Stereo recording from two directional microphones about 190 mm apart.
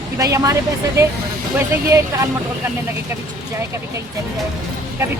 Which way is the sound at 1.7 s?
15° right (ahead or behind).